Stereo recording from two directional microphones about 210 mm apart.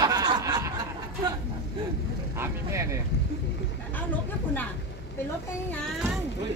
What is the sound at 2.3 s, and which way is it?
Speech, 10° right (ahead or behind).